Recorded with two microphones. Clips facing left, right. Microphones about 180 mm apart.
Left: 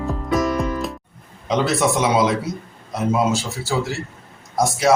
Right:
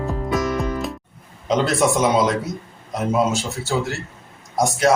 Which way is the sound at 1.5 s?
Centre (ahead or behind).